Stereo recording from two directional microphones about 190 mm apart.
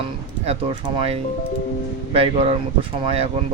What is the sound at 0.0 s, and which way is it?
Speech, 30° right (ahead or behind).